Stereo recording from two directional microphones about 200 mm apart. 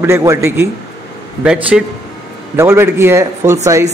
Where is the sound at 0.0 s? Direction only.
15° right (ahead or behind).